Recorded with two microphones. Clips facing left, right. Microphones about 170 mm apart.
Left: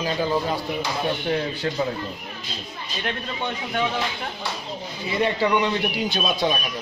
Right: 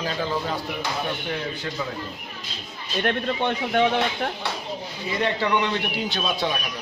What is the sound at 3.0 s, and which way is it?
Speech, 50° right (ahead or behind).